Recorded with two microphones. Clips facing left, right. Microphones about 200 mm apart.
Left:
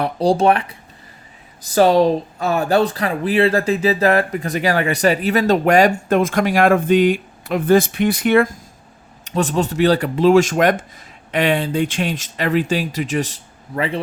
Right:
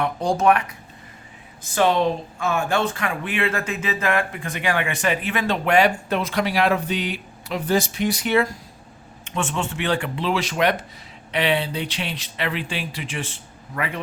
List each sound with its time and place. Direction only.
0.0 s speech: 35° left (ahead or behind); by 8.5 s 55° left (ahead or behind)
9.2 s speech: 35° left (ahead or behind)